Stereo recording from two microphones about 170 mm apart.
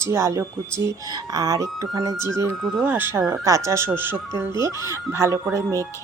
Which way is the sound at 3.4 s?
20° right (ahead or behind).